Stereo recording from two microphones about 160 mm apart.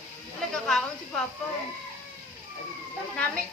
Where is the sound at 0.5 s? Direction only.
5° left (ahead or behind).